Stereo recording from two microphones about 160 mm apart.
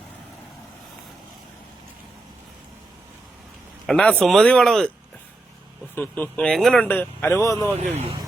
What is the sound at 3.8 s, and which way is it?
Speech, 5° left (ahead or behind).